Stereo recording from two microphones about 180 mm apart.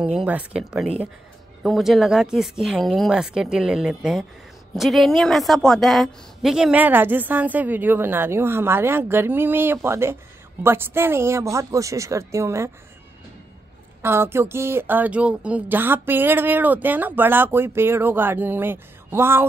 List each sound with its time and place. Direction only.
0.0 s speech: 5° right (ahead or behind)
14.0 s speech: 15° right (ahead or behind)